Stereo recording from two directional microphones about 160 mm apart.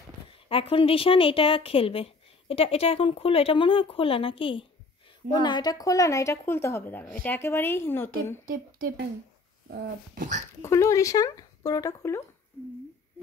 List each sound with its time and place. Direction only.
0.5 s a woman's voice: 35° left (ahead or behind); by 8.1 s 15° left (ahead or behind)
8.5 s speech: 60° right (ahead or behind)
9.7 s dog: 90° right
10.6 s speech: 20° left (ahead or behind)